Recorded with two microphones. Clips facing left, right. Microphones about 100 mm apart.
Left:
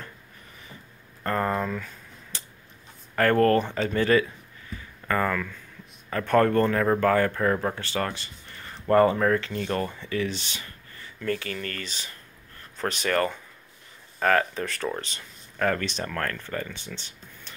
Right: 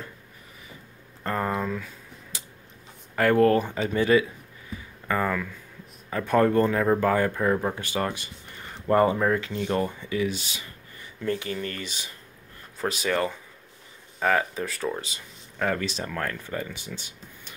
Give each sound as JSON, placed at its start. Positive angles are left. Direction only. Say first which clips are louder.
{"t": 1.2, "sound": "speech", "louder": "left 1 dB", "side_deg": -10}
{"t": 2.3, "sound": "a sound", "louder": "left 1 dB", "side_deg": -5}
{"t": 3.2, "sound": "speech", "louder": "right 1 dB", "side_deg": -10}
{"t": 11.0, "sound": "speech", "louder": "right 1 dB", "side_deg": -20}